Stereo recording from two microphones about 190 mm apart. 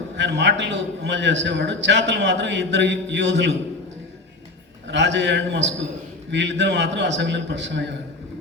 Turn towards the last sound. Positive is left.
turn(degrees=-70)  # may be behind; listen again after turning